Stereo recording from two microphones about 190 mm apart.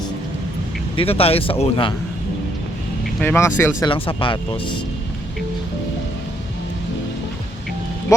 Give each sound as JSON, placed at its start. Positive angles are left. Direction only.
{"t": 0.9, "sound": "speech", "side_deg": 30}
{"t": 3.2, "sound": "speech", "side_deg": 10}
{"t": 3.8, "sound": "speech", "side_deg": 25}